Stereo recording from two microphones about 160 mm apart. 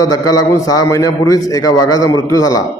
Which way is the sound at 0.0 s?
20° left (ahead or behind).